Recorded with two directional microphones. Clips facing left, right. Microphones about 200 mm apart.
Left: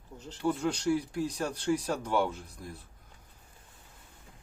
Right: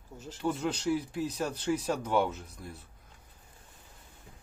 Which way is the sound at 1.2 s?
10° left (ahead or behind).